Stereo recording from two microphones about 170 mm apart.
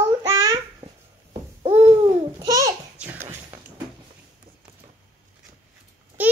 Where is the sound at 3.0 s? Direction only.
10° right (ahead or behind).